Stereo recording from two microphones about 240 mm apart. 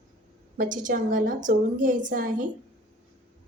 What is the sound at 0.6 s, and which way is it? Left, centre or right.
A woman's voice, right.